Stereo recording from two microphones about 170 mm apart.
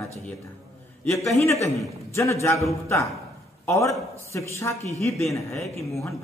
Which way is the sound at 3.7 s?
15° left (ahead or behind).